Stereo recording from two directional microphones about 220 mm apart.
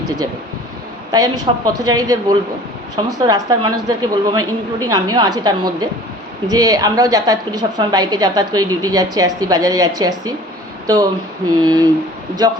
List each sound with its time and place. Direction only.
1.1 s a woman's voice: 15° right (ahead or behind)